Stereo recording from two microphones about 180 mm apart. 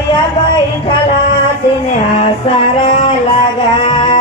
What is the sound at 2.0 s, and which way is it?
Music, 30° left (ahead or behind).